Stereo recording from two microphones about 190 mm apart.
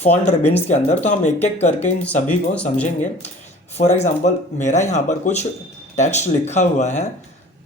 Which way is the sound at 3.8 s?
35° left (ahead or behind).